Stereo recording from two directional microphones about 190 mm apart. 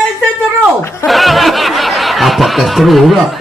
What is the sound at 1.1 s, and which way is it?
Speech, centre (ahead or behind).